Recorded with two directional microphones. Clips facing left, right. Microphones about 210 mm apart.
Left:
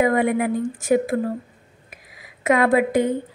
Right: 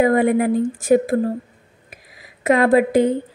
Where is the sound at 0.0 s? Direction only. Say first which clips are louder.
Right 3 dB; 40° right (ahead or behind).